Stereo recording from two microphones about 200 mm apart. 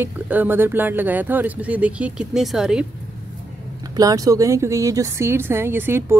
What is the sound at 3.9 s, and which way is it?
Speech, 15° right (ahead or behind).